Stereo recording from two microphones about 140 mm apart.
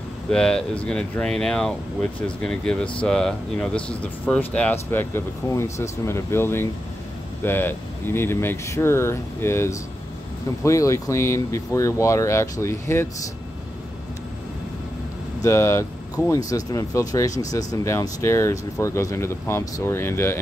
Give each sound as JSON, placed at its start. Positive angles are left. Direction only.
{"t": 0.3, "sound": "speech", "side_deg": 5}
{"t": 15.4, "sound": "speech", "side_deg": 20}